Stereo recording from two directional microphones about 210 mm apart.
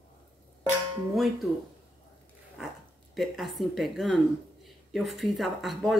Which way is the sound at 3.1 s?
Centre (ahead or behind).